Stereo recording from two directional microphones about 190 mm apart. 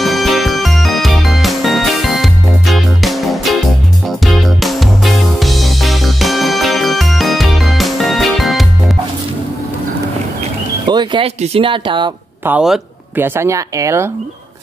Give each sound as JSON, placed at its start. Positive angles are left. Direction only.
{"t": 0.0, "sound": "music", "side_deg": 0}
{"t": 10.9, "sound": "speech", "side_deg": -25}
{"t": 12.4, "sound": "speech", "side_deg": -5}